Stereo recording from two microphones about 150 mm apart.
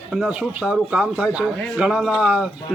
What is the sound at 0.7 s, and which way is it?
A man's voice, 5° right (ahead or behind).